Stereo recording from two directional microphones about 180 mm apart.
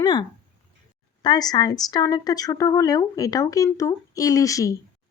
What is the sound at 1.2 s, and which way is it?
Speech, 20° left (ahead or behind).